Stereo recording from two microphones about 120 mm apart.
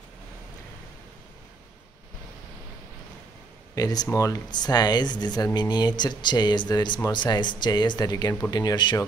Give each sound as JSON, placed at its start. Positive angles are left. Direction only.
{"t": 3.7, "sound": "speech", "side_deg": 30}